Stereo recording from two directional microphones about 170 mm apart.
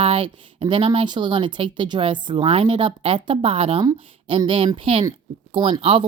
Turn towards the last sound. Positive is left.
turn(degrees=-30)  # may be behind; listen again after turning